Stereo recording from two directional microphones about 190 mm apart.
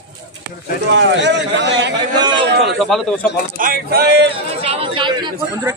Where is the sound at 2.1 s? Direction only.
20° right (ahead or behind).